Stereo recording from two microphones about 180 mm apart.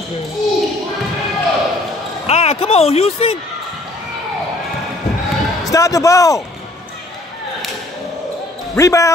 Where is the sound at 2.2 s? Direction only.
35° left (ahead or behind).